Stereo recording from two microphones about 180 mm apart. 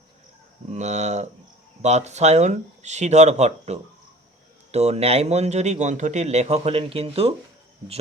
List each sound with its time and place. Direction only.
0.7 s speech: 40° right (ahead or behind)